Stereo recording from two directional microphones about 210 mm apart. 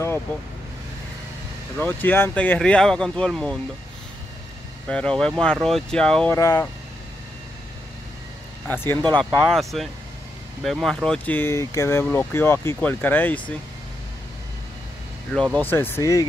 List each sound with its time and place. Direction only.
1.8 s speech: 10° left (ahead or behind)
4.8 s speech: 5° left (ahead or behind)
6.3 s speech: 15° left (ahead or behind)
8.6 s speech: 10° left (ahead or behind)
15.3 s speech: 5° left (ahead or behind)